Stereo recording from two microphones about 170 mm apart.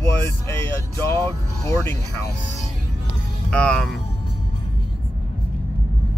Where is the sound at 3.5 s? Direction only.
5° left (ahead or behind).